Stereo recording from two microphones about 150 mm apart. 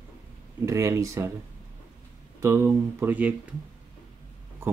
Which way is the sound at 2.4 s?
20° right (ahead or behind).